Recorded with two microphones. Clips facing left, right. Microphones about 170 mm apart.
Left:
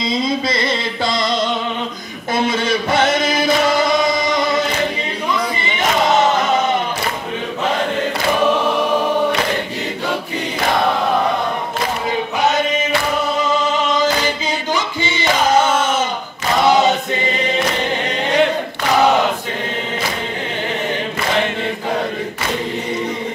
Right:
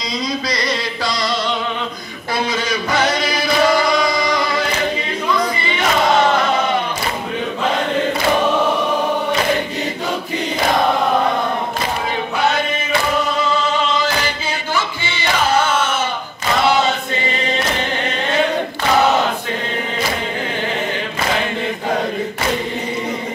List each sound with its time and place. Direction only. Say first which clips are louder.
0.1 s music: left 2 dB; 25° left (ahead or behind)
3.3 s chant: right 2 dB; 25° left (ahead or behind)